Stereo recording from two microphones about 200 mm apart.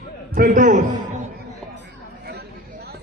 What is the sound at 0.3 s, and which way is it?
Speech, 40° right (ahead or behind).